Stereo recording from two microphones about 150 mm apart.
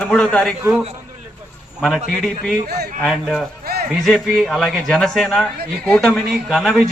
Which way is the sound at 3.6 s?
90° right.